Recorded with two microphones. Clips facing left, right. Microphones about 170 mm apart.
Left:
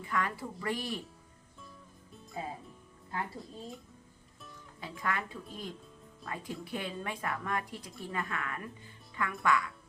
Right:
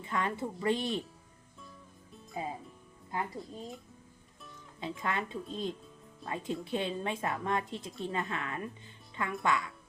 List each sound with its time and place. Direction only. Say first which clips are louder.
0.0 s a woman's voice: right 1 dB; 25° right (ahead or behind)
2.4 s a woman's voice: right 2 dB; 15° right (ahead or behind)
4.8 s a woman's voice: right 2 dB; 20° right (ahead or behind)